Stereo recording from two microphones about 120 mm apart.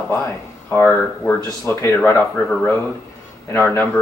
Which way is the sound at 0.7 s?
20° left (ahead or behind).